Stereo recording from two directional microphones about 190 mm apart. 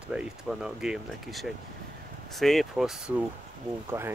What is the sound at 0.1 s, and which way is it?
Speech, 5° right (ahead or behind).